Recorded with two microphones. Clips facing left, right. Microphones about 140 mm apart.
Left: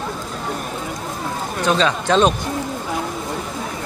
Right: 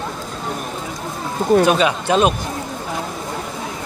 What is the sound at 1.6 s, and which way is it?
Speech, 10° right (ahead or behind).